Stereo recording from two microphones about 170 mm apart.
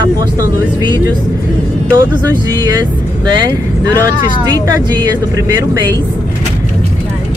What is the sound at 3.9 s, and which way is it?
Speech, 20° right (ahead or behind).